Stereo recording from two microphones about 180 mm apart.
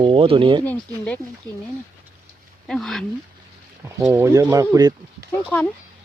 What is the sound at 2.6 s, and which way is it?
Speech, centre (ahead or behind).